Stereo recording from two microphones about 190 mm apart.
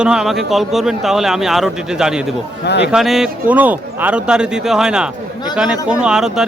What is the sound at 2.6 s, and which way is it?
Speech, 65° left (ahead or behind).